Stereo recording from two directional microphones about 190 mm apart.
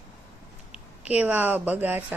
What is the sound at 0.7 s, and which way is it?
Speech, 5° right (ahead or behind).